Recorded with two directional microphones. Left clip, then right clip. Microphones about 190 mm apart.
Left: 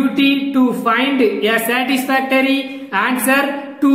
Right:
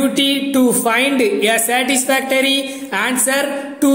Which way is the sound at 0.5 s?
25° right (ahead or behind).